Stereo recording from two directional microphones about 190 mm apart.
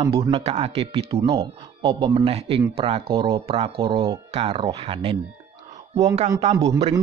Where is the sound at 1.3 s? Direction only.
15° right (ahead or behind).